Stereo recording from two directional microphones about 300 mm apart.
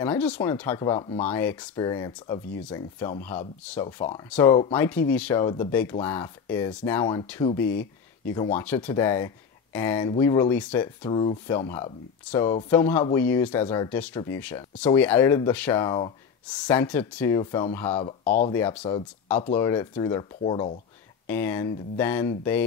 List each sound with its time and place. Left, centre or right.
0.0 s speech: centre
11.1 s speech: centre
18.2 s speech: left
18.5 s speech: centre